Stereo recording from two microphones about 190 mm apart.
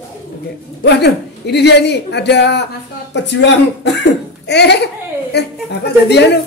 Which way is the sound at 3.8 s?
60° left (ahead or behind).